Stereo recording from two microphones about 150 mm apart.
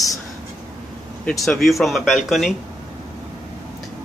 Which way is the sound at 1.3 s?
Centre (ahead or behind).